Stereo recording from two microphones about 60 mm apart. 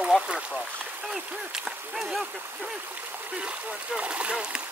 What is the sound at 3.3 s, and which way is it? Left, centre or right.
Speech, centre.